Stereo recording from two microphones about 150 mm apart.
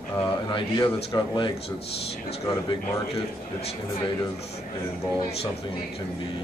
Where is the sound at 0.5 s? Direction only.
30° left (ahead or behind).